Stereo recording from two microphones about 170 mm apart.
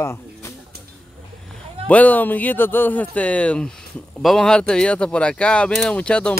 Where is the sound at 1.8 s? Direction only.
10° left (ahead or behind).